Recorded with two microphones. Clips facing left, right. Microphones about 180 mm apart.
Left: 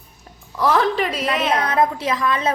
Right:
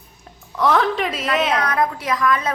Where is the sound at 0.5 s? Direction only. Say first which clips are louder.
Even; 5° left (ahead or behind).